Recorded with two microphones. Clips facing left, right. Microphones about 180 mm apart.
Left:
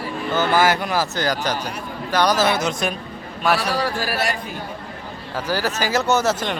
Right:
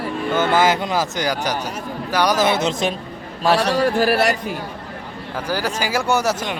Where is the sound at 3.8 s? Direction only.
55° right (ahead or behind).